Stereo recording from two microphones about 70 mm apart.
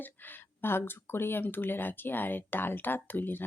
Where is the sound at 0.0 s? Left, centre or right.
Left.